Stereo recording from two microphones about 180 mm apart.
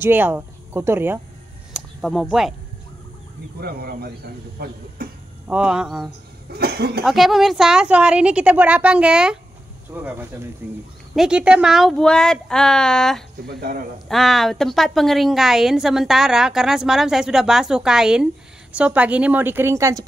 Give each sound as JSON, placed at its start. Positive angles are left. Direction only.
{"t": 0.0, "sound": "speech", "side_deg": -10}
{"t": 1.7, "sound": "a sound", "side_deg": 0}
{"t": 3.5, "sound": "speech", "side_deg": -60}
{"t": 5.5, "sound": "a woman's voice", "side_deg": -5}
{"t": 6.5, "sound": "speech", "side_deg": -60}
{"t": 7.1, "sound": "a woman's voice", "side_deg": 0}
{"t": 13.5, "sound": "speech", "side_deg": -60}
{"t": 14.0, "sound": "a woman's voice", "side_deg": 0}